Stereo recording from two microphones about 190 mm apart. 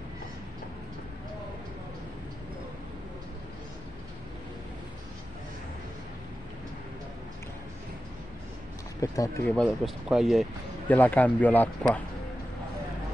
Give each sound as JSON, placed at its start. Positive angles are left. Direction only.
{"t": 9.0, "sound": "speech", "side_deg": 15}
{"t": 9.5, "sound": "speech", "side_deg": 5}
{"t": 10.9, "sound": "speech", "side_deg": 10}